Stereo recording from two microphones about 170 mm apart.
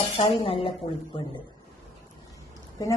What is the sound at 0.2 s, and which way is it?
Speech, 30° left (ahead or behind).